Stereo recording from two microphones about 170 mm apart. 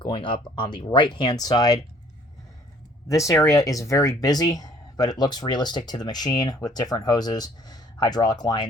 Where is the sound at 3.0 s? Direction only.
20° left (ahead or behind).